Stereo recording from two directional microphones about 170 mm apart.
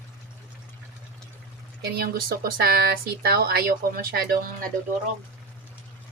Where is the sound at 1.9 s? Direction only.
65° right (ahead or behind).